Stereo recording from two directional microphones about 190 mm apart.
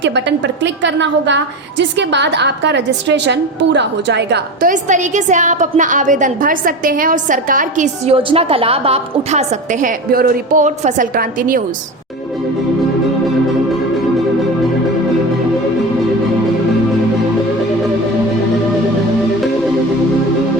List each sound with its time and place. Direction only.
0.0 s a woman's voice: 70° right (ahead or behind)
4.7 s a woman's voice: 40° right (ahead or behind)
8.1 s a woman's voice: 30° right (ahead or behind); by 11.6 s 45° right (ahead or behind)